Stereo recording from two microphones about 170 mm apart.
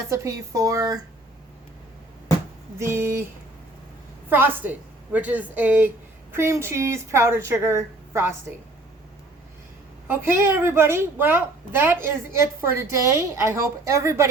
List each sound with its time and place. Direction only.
0.1 s speech: 20° right (ahead or behind)
2.7 s a woman's voice: 15° right (ahead or behind)
4.3 s a woman's voice: 10° right (ahead or behind)
10.1 s a woman's voice: 15° right (ahead or behind)